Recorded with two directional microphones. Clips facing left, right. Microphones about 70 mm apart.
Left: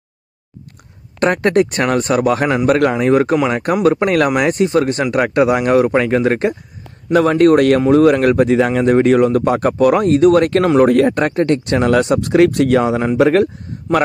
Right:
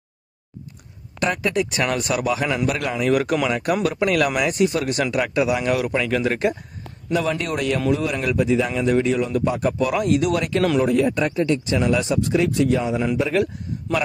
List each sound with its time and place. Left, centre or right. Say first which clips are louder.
1.2 s speech: left 8 dB; left
5.1 s speech: left 9 dB; left
7.1 s speech: left 12 dB; left